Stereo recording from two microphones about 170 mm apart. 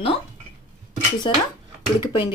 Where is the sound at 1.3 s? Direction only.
25° left (ahead or behind).